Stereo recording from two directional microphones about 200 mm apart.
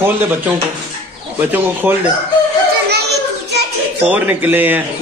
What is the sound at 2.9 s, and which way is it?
Children playing, 55° right (ahead or behind).